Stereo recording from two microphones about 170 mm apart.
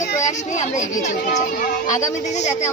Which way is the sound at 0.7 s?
45° left (ahead or behind).